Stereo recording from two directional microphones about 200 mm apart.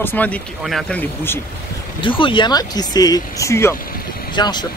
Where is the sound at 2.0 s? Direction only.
25° left (ahead or behind).